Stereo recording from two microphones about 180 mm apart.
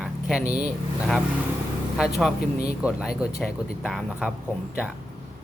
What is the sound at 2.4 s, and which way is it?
Speech, 55° left (ahead or behind).